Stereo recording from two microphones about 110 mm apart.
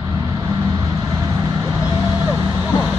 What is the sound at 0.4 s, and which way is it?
Vehicle, 30° right (ahead or behind).